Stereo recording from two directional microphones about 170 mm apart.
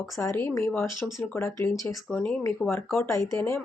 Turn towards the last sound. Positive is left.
turn(degrees=15)  # may be behind; listen again after turning